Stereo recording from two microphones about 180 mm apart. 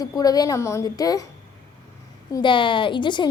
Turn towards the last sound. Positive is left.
turn(degrees=25)  # may be behind; listen again after turning